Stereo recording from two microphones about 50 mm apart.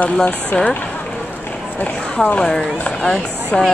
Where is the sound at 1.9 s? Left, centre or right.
Centre.